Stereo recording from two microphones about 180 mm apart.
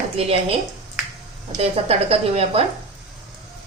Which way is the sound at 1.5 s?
35° right (ahead or behind).